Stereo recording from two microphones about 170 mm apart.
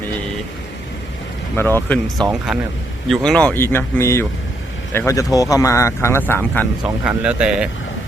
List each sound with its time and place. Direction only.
1.5 s speech: 10° left (ahead or behind)
2.5 s speech: centre (ahead or behind)
7.1 s speech: 5° right (ahead or behind)